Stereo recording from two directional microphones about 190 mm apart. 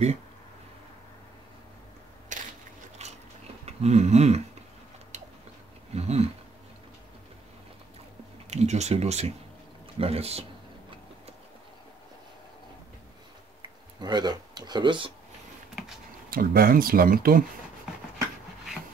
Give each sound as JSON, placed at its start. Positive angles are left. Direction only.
{"t": 2.3, "sound": "crushing", "side_deg": -40}
{"t": 3.0, "sound": "biting", "side_deg": -35}
{"t": 3.6, "sound": "a sound", "side_deg": -35}
{"t": 5.9, "sound": "a sound", "side_deg": -35}
{"t": 8.5, "sound": "speech", "side_deg": -35}
{"t": 13.6, "sound": "speech", "side_deg": -20}
{"t": 16.3, "sound": "speech", "side_deg": -50}